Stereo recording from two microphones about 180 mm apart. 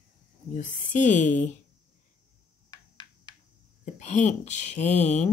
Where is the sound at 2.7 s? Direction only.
20° left (ahead or behind).